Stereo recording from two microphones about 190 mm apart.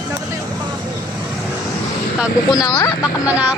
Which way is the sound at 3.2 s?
5° right (ahead or behind).